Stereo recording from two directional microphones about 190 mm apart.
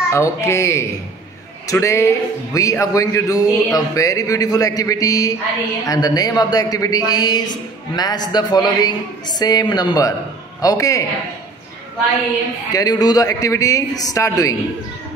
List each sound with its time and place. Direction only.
0.1 s a woman's voice: 15° left (ahead or behind)
12.7 s speech: 20° left (ahead or behind)